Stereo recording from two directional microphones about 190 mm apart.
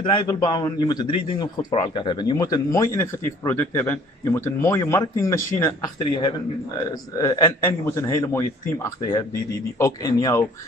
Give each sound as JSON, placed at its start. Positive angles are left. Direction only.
{"t": 0.0, "sound": "a man's voice", "side_deg": 25}